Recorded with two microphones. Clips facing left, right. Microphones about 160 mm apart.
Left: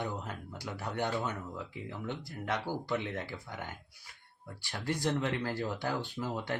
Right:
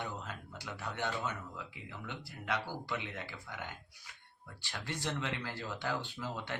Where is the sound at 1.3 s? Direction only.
40° left (ahead or behind).